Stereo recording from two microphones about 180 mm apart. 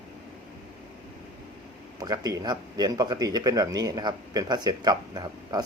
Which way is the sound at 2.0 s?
20° right (ahead or behind).